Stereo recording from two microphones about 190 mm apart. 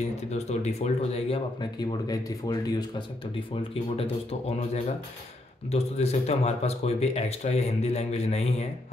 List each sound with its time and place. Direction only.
0.3 s speech: 35° left (ahead or behind); by 2.7 s 20° left (ahead or behind)
3.9 s speech: 30° left (ahead or behind)